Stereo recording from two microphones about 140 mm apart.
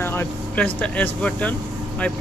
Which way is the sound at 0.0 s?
15° left (ahead or behind).